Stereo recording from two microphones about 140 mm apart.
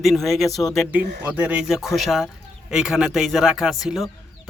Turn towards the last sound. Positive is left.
turn(degrees=0)  # may be behind; listen again after turning